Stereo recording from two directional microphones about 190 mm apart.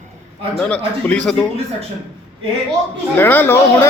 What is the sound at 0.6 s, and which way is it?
Speech, 5° left (ahead or behind).